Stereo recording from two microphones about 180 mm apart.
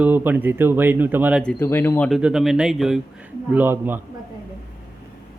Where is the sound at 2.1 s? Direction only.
5° right (ahead or behind).